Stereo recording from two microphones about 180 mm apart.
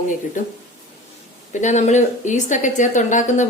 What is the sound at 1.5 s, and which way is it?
A woman's voice, 40° left (ahead or behind).